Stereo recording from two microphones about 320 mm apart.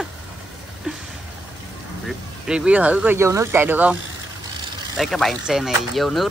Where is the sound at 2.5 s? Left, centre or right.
Centre.